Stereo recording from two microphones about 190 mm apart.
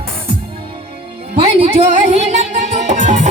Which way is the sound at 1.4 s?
35° right (ahead or behind).